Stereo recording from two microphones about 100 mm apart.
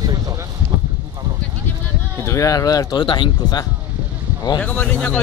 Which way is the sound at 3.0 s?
55° left (ahead or behind).